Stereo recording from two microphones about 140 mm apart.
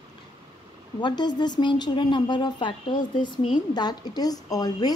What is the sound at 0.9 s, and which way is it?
A woman's voice, 30° left (ahead or behind).